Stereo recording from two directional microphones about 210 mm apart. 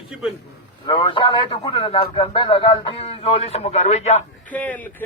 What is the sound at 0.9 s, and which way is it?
A man's voice, 25° left (ahead or behind).